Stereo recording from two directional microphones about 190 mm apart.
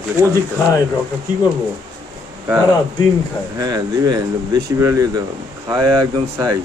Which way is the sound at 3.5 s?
20° right (ahead or behind).